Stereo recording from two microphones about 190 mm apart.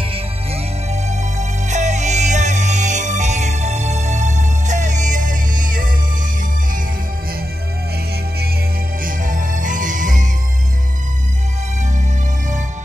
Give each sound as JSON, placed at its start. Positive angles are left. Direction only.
{"t": 1.0, "sound": "music", "side_deg": -40}
{"t": 9.0, "sound": "music", "side_deg": -45}